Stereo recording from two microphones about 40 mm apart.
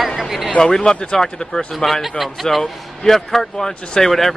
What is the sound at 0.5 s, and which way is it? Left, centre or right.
Speech, left.